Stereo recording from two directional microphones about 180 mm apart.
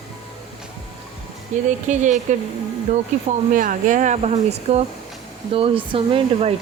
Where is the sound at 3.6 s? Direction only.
45° right (ahead or behind).